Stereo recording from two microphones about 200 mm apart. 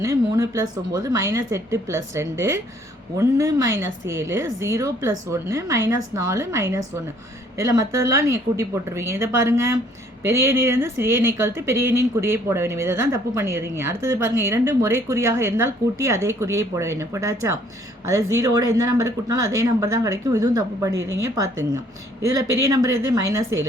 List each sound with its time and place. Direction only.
0.0 s speech: 15° right (ahead or behind)